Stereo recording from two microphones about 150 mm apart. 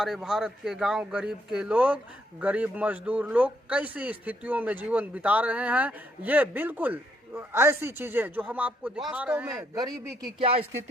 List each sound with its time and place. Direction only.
0.0 s speech: centre (ahead or behind)
9.5 s speech: 25° right (ahead or behind)
10.4 s speech: 40° right (ahead or behind)